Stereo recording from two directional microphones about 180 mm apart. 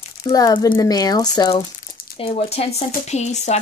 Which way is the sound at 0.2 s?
20° left (ahead or behind).